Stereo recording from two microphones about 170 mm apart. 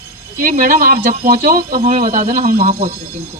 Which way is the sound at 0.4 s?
55° right (ahead or behind).